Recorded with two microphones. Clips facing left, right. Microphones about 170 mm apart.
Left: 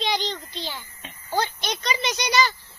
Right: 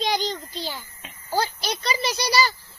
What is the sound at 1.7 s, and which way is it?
Speech, 5° right (ahead or behind).